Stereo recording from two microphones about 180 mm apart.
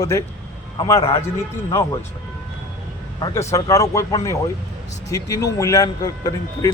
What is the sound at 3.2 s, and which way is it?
A man's voice, 15° left (ahead or behind).